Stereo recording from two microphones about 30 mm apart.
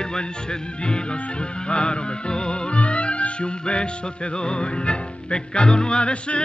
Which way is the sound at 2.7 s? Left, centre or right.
Left.